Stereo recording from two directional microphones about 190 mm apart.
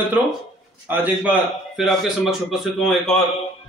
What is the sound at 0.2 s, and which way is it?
A man's voice, 5° right (ahead or behind).